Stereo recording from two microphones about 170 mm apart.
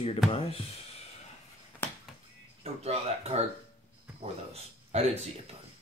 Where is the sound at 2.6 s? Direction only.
35° right (ahead or behind).